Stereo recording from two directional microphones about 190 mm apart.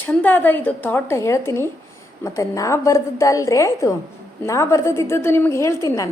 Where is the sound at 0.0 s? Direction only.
10° left (ahead or behind).